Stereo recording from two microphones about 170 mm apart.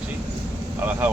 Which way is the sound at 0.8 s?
10° right (ahead or behind).